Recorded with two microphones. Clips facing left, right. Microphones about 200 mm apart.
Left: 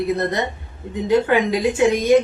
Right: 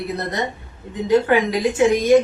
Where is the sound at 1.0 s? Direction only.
25° left (ahead or behind).